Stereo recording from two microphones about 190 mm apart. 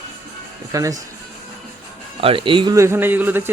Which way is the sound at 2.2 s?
30° right (ahead or behind).